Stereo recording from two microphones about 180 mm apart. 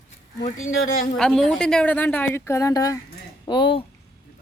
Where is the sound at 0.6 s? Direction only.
90° left.